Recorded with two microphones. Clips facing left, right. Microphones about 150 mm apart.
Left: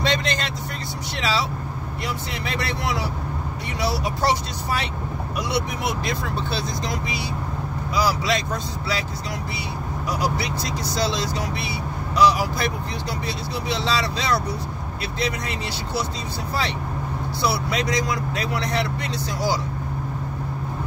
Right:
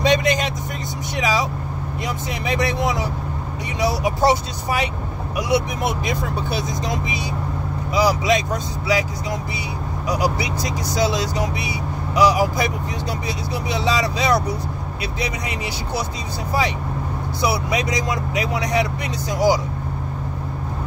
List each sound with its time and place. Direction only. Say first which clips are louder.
0.0 s vehicle: right 6 dB; 15° right (ahead or behind)
1.1 s speech: right 3 dB; 15° right (ahead or behind)
7.9 s speech: right 4 dB; 15° right (ahead or behind)
10.0 s speech: right 3 dB; 15° right (ahead or behind)
13.7 s speech: right 3 dB; 15° right (ahead or behind)
17.4 s speech: right 2 dB; 15° right (ahead or behind)